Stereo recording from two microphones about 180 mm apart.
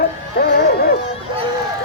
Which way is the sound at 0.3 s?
60° left (ahead or behind).